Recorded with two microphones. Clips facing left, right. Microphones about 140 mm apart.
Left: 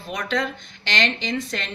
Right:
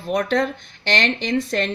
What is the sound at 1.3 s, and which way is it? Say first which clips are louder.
Speech: right 5 dB; 30° right (ahead or behind).